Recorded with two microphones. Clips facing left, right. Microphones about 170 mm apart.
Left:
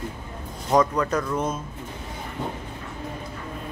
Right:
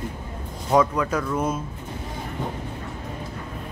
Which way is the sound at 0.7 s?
5° right (ahead or behind).